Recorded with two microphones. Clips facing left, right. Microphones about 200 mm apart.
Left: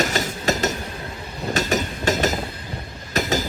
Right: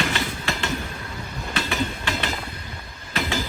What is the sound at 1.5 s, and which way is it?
Train, 40° left (ahead or behind).